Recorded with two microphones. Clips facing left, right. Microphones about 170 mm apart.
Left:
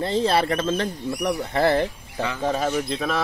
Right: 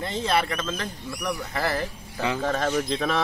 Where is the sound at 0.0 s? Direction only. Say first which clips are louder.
Left 4 dB; 30° left (ahead or behind).